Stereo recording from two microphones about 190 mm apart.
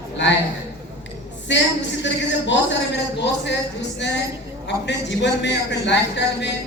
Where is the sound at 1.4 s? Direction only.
70° left (ahead or behind).